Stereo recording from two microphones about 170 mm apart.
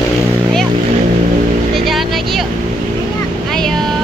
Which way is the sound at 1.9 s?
Centre (ahead or behind).